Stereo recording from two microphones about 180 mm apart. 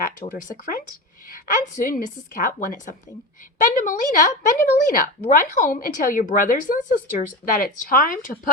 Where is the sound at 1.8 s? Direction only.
50° left (ahead or behind).